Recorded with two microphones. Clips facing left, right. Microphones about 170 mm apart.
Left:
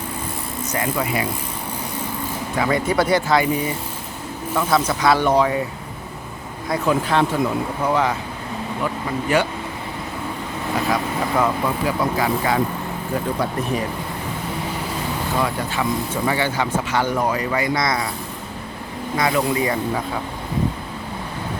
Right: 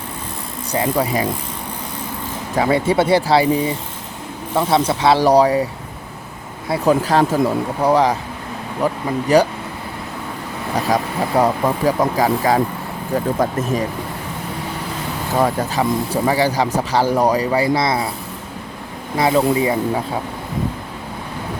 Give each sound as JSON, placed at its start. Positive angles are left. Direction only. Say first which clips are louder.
{"t": 0.7, "sound": "speech", "louder": "right 5 dB", "side_deg": -35}
{"t": 2.6, "sound": "speech", "louder": "right 4 dB", "side_deg": -30}
{"t": 6.7, "sound": "speech", "louder": "right 4 dB", "side_deg": -40}
{"t": 10.8, "sound": "speech", "louder": "right 3 dB", "side_deg": -40}
{"t": 15.4, "sound": "speech", "louder": "right 7 dB", "side_deg": -40}
{"t": 19.1, "sound": "speech", "louder": "right 4 dB", "side_deg": -25}